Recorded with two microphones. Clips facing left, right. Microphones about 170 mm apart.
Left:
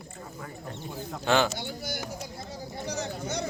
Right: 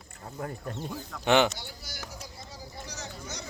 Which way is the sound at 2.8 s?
55° left (ahead or behind).